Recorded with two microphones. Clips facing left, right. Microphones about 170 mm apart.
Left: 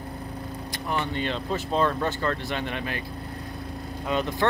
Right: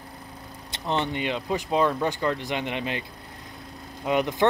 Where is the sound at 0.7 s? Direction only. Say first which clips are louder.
Right 3 dB; 25° right (ahead or behind).